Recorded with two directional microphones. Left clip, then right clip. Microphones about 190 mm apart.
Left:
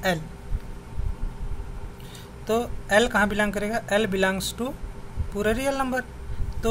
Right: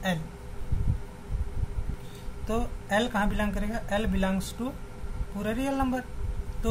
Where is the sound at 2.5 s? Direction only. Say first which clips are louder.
Left 6 dB; 35° left (ahead or behind).